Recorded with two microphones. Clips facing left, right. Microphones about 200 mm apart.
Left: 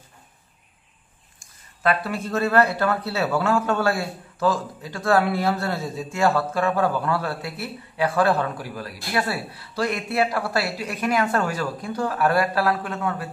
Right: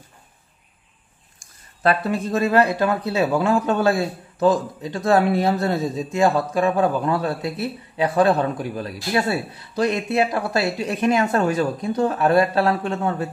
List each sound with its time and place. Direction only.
2.0 s speech: 15° right (ahead or behind)